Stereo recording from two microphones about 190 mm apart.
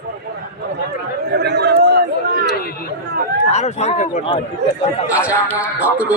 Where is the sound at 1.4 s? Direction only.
60° right (ahead or behind).